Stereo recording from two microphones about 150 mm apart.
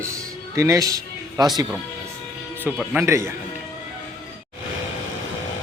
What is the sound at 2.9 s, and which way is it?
Speech, 20° right (ahead or behind).